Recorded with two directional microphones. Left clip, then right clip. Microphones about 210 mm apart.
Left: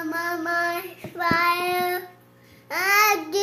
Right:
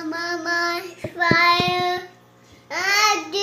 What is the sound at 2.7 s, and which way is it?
Babbling, 10° left (ahead or behind).